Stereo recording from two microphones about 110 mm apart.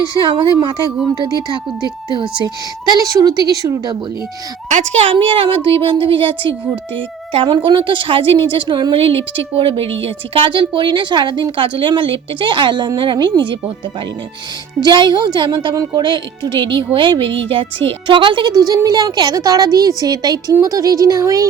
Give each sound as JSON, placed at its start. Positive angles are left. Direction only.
{"t": 0.2, "sound": "a woman's voice", "side_deg": -40}
{"t": 2.1, "sound": "a woman's voice", "side_deg": -40}
{"t": 5.1, "sound": "speech", "side_deg": -55}
{"t": 14.8, "sound": "a woman's voice", "side_deg": -40}
{"t": 16.0, "sound": "a woman's voice", "side_deg": -45}